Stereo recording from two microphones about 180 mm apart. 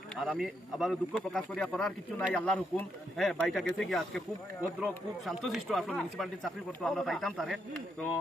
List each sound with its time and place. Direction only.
0.2 s speech: centre (ahead or behind)